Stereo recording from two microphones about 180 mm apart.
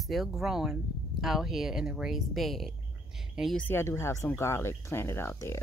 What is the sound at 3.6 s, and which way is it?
Speech, 15° left (ahead or behind).